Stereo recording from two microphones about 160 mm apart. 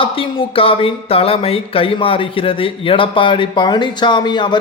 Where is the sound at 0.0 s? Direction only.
35° left (ahead or behind).